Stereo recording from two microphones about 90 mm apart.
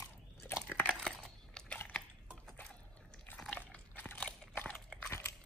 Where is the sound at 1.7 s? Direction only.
20° left (ahead or behind).